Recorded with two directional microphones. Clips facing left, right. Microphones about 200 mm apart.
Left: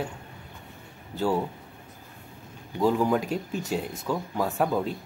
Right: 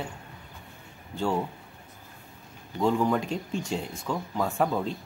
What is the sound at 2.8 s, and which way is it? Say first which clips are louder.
Speech: left 1 dB; 5° left (ahead or behind).